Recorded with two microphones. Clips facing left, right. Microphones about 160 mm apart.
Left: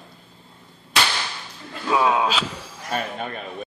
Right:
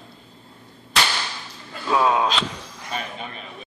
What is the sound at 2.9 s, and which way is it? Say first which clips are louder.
Speech: left 5 dB; 50° left (ahead or behind).